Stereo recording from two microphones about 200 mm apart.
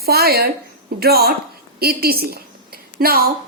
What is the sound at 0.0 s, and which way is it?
A woman's voice, 50° right (ahead or behind).